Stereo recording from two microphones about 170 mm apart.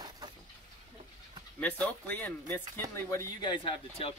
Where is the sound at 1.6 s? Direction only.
10° left (ahead or behind); by 4.1 s 30° left (ahead or behind).